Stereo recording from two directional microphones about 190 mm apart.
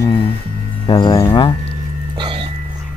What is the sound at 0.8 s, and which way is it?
Speech, 25° left (ahead or behind).